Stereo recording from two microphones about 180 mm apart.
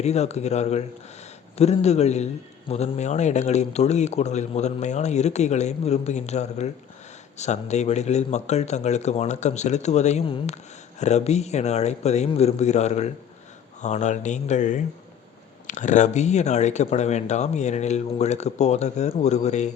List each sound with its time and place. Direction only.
0.0 s a man's voice: 35° left (ahead or behind)